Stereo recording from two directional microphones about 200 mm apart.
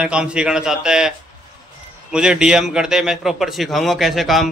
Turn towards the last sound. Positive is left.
turn(degrees=0)  # may be behind; listen again after turning